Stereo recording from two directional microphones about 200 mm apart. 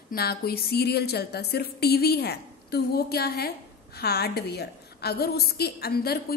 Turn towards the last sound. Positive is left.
turn(degrees=50)  # may be behind; listen again after turning